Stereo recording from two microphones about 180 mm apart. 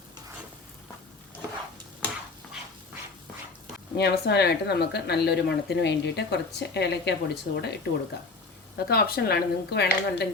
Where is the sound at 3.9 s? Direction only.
65° left (ahead or behind).